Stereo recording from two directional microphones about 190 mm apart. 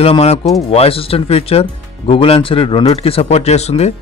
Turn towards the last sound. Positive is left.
turn(degrees=35)  # may be behind; listen again after turning